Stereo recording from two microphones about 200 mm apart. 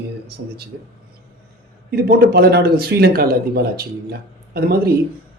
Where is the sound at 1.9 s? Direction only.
50° right (ahead or behind).